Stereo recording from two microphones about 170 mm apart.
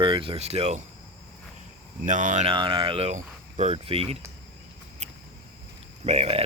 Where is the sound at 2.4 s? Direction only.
30° right (ahead or behind).